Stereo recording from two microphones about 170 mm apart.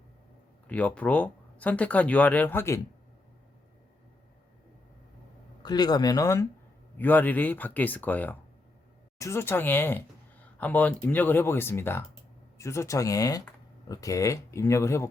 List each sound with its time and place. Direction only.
0.7 s speech: 10° left (ahead or behind)
5.6 s speech: 25° left (ahead or behind)